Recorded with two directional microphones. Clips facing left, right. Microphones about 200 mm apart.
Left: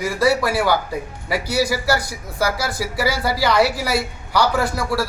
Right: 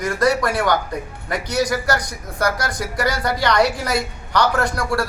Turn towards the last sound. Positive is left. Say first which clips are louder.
# even
turn(degrees=5)  # may be behind; listen again after turning